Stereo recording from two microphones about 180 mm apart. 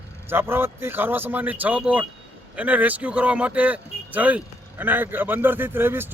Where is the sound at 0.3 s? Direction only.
10° right (ahead or behind).